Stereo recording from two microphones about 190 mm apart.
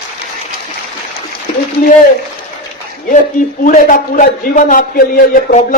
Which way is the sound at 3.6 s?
45° left (ahead or behind).